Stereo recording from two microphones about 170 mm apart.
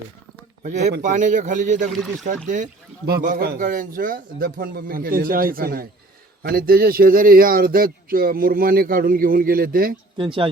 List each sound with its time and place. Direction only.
0.6 s speech: 45° right (ahead or behind)
3.1 s a man's voice: 60° right (ahead or behind)
10.2 s speech: 30° right (ahead or behind)